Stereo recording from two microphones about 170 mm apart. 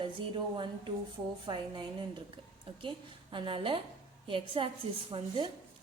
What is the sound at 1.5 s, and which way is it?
Speech, 25° right (ahead or behind).